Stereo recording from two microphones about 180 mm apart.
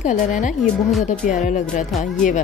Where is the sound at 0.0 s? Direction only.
45° left (ahead or behind).